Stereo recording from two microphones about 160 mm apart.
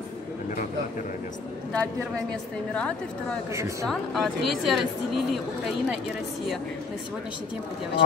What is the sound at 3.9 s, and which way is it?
A woman's voice, centre (ahead or behind).